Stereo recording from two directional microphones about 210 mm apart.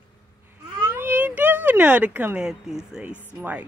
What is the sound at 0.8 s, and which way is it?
Speech, 10° right (ahead or behind).